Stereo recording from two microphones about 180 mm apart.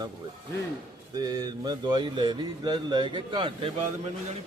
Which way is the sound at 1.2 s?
20° right (ahead or behind).